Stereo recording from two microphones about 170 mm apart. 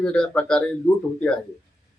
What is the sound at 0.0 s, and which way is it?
Speech, 5° left (ahead or behind).